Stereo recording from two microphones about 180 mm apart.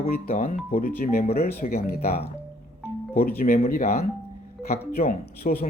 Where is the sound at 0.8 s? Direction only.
55° left (ahead or behind).